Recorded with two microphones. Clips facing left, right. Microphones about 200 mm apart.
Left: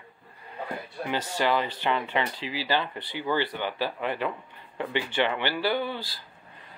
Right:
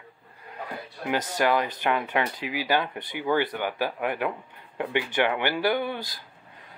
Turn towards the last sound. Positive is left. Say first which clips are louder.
# right 2 dB
turn(degrees=-15)  # may be behind; listen again after turning